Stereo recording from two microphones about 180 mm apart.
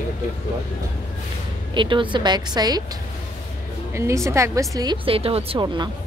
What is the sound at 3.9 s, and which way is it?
Speech, 15° right (ahead or behind).